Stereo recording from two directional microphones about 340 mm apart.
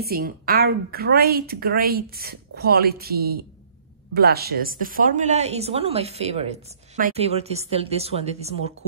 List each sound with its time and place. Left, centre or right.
0.0 s a woman's voice: right